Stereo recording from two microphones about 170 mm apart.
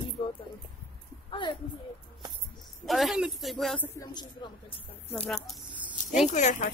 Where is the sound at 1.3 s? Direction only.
25° left (ahead or behind).